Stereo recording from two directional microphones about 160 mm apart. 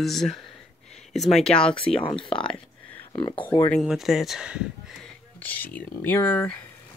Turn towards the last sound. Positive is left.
turn(degrees=10)  # may be behind; listen again after turning